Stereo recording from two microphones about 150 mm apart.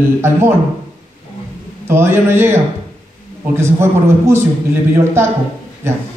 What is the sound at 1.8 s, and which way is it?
A man's voice, 15° right (ahead or behind).